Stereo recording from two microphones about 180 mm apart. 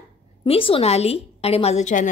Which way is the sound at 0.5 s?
30° left (ahead or behind).